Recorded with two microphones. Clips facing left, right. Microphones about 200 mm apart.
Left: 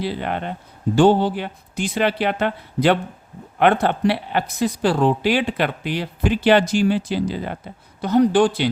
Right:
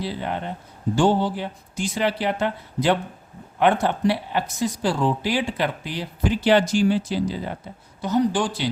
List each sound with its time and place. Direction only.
0.0 s speech: 65° left (ahead or behind)